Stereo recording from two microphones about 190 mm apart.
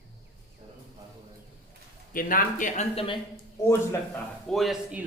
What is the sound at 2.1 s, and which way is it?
Speech, 50° left (ahead or behind).